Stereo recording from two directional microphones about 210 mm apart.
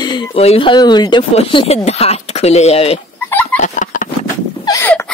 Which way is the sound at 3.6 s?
35° left (ahead or behind).